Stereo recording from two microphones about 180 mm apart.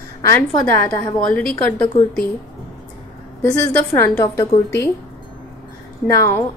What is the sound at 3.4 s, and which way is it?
A woman's voice, 15° left (ahead or behind).